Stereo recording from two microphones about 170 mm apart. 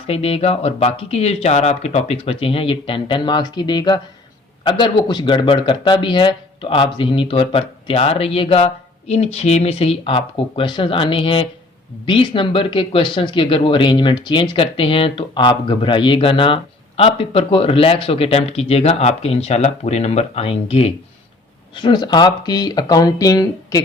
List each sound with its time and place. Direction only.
0.1 s speech: 35° left (ahead or behind)
21.8 s speech: 25° left (ahead or behind)